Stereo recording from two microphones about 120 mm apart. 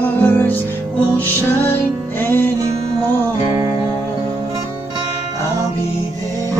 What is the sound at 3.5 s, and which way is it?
Music, 35° right (ahead or behind).